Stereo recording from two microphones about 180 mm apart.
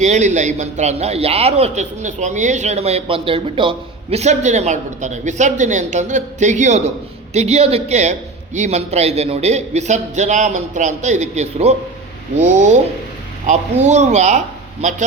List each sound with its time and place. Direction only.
0.0 s a man's voice: 40° right (ahead or behind)